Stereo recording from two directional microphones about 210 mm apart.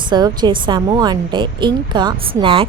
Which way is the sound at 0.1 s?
20° right (ahead or behind).